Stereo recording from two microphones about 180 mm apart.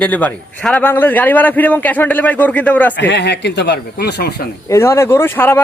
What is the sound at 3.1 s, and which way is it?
Speech, 70° left (ahead or behind).